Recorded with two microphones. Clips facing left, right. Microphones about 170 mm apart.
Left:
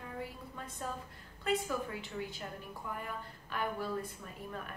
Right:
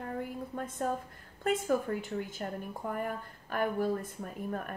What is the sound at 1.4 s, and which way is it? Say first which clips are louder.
A woman's voice: right 5 dB; 50° right (ahead or behind).